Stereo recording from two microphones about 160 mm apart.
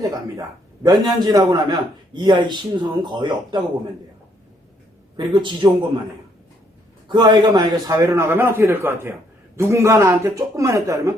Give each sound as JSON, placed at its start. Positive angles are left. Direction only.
{"t": 0.0, "sound": "a man's voice", "side_deg": -20}
{"t": 5.3, "sound": "a man's voice", "side_deg": -30}
{"t": 7.1, "sound": "a man's voice", "side_deg": -25}